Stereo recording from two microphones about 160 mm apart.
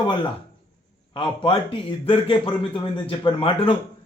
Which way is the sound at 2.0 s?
30° left (ahead or behind).